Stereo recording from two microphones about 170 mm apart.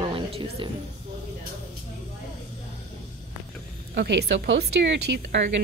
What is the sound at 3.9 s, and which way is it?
Speech, 85° right.